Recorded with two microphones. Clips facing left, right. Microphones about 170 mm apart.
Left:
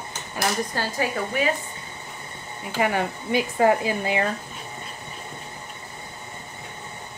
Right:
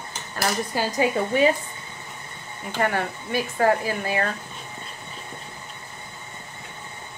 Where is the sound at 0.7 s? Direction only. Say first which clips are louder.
Right 3 dB; 10° right (ahead or behind).